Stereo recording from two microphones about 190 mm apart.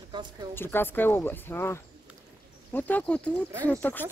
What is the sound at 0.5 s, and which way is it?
Speech, 10° left (ahead or behind).